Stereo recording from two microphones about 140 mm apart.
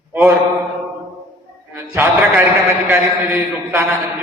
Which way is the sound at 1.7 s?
15° right (ahead or behind).